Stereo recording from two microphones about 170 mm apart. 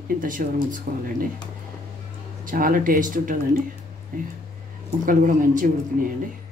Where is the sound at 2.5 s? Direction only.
55° right (ahead or behind).